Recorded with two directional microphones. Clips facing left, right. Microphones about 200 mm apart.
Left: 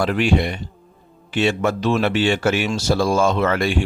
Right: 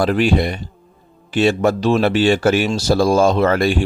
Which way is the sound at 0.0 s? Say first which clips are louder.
Right 3 dB; 35° right (ahead or behind).